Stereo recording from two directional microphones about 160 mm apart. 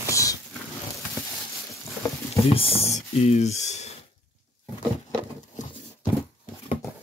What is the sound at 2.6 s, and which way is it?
Speech, 35° left (ahead or behind).